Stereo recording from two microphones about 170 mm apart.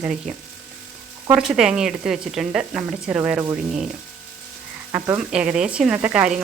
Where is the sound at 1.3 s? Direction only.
5° right (ahead or behind).